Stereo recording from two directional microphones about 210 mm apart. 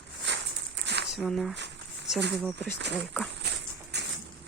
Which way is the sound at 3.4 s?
50° right (ahead or behind).